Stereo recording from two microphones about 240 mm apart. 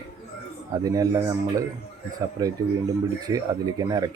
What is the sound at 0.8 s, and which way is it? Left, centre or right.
Speech, centre.